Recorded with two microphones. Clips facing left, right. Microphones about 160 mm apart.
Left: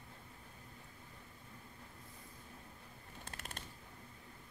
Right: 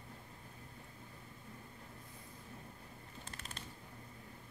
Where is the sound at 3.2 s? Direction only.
55° left (ahead or behind).